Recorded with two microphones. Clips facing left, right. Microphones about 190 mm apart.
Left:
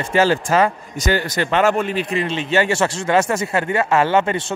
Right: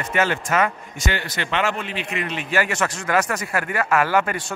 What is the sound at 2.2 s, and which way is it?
Speech, 25° left (ahead or behind).